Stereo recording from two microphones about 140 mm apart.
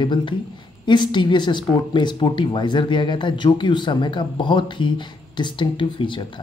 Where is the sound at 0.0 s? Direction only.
35° left (ahead or behind).